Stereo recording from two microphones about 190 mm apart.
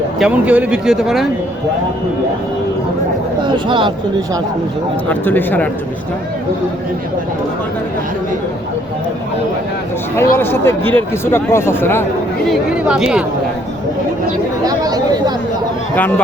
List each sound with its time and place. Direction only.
0.2 s speech: 5° right (ahead or behind)
3.4 s speech: 25° right (ahead or behind)
5.0 s speech: 10° left (ahead or behind)
10.2 s speech: 10° left (ahead or behind)
12.5 s speech: 5° right (ahead or behind)
14.6 s speech: 20° right (ahead or behind)
16.0 s speech: 10° left (ahead or behind)